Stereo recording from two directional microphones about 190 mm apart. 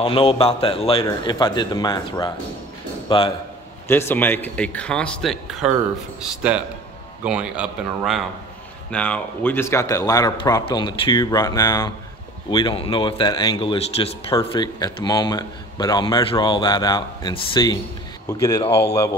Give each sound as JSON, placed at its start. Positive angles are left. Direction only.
{"t": 0.0, "sound": "speech", "side_deg": 30}
{"t": 3.8, "sound": "speech", "side_deg": 10}
{"t": 8.9, "sound": "a man's voice", "side_deg": 5}